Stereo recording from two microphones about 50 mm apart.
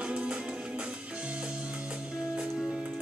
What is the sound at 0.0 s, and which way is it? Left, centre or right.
Music, centre.